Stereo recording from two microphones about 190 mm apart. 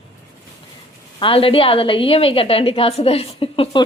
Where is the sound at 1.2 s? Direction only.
30° left (ahead or behind).